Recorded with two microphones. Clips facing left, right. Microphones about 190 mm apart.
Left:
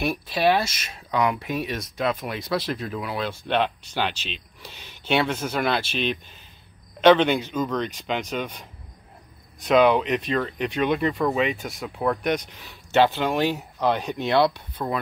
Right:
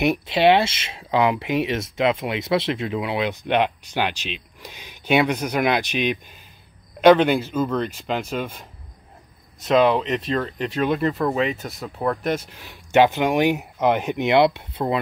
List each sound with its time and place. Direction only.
0.0 s speech: 25° right (ahead or behind)